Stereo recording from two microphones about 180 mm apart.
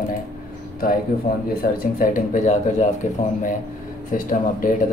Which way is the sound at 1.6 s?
55° left (ahead or behind).